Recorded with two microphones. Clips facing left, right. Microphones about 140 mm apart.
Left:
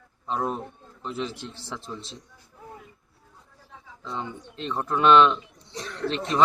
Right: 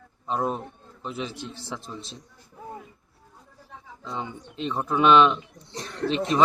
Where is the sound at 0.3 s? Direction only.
Centre (ahead or behind).